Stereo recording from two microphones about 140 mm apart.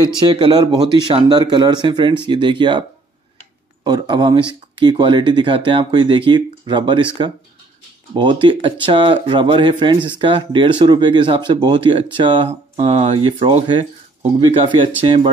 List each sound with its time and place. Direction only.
0.2 s speech: 35° right (ahead or behind)
3.8 s speech: 30° right (ahead or behind)
8.1 s speech: 35° right (ahead or behind)